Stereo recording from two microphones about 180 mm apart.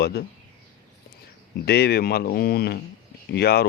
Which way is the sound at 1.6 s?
65° left (ahead or behind).